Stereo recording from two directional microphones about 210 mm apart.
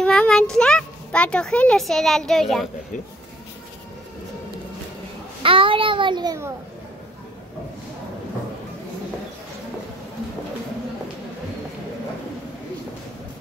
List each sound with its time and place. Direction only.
0.0 s a child's voice: 5° left (ahead or behind)
5.4 s a child's voice: 25° right (ahead or behind)